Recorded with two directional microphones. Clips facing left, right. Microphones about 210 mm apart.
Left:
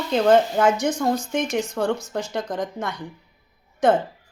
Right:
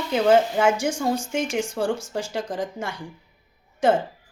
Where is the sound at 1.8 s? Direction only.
30° right (ahead or behind).